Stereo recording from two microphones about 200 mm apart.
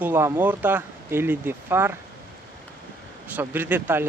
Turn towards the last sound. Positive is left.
turn(degrees=-10)  # may be behind; listen again after turning